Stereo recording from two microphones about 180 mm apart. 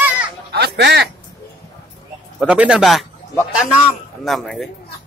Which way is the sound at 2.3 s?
5° right (ahead or behind).